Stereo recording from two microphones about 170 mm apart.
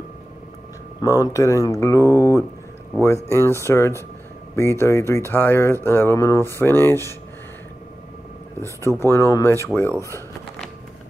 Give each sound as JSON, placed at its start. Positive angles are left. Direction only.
{"t": 1.0, "sound": "speech", "side_deg": 20}
{"t": 8.5, "sound": "speech", "side_deg": 15}